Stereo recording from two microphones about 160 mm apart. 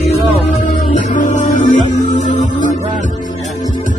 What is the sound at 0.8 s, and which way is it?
Music, 50° left (ahead or behind).